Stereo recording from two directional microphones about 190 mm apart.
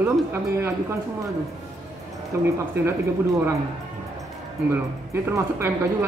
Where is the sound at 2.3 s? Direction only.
15° right (ahead or behind).